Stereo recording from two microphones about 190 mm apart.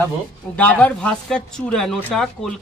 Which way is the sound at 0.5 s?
10° left (ahead or behind).